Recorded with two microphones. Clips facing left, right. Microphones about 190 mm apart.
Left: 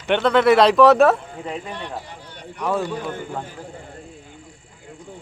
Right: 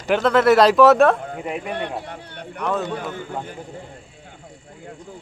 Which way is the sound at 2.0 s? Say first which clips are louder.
Right 3 dB; 60° right (ahead or behind).